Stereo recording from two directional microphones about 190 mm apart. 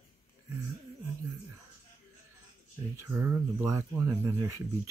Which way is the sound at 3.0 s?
10° right (ahead or behind).